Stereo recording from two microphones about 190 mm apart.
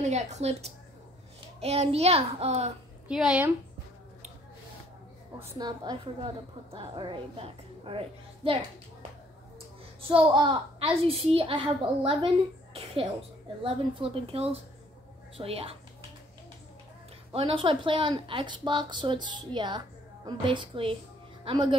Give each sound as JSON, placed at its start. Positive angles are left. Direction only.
{"t": 0.0, "sound": "a child's voice", "side_deg": -35}
{"t": 3.1, "sound": "a woman's voice", "side_deg": -5}
{"t": 5.6, "sound": "a woman's voice", "side_deg": -20}
{"t": 10.0, "sound": "a woman's voice", "side_deg": -25}
{"t": 17.3, "sound": "a woman's voice", "side_deg": -30}